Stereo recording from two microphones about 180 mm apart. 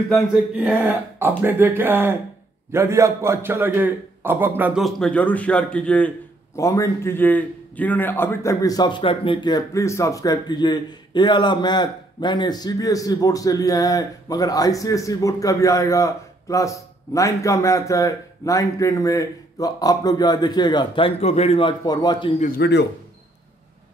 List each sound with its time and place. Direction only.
0.6 s a man's voice: 10° right (ahead or behind); by 22.3 s 20° left (ahead or behind)
22.4 s speech: 60° left (ahead or behind)